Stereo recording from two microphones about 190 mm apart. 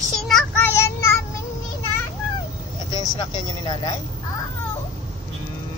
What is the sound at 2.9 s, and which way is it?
Vehicle, 25° left (ahead or behind).